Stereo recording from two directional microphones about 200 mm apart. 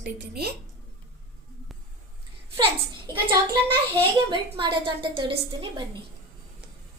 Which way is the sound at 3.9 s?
25° right (ahead or behind).